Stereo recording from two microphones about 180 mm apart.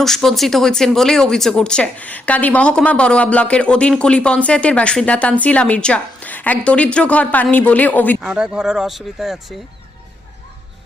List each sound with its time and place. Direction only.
0.0 s speech: centre (ahead or behind)
8.2 s speech: 5° right (ahead or behind)